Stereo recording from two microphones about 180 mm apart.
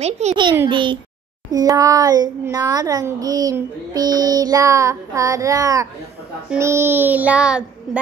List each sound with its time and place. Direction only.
0.0 s a child's voice: 40° right (ahead or behind)
0.7 s a child's voice: 25° right (ahead or behind)
6.6 s child singing: 15° right (ahead or behind)